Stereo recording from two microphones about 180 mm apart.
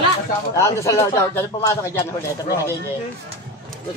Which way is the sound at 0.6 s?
15° left (ahead or behind).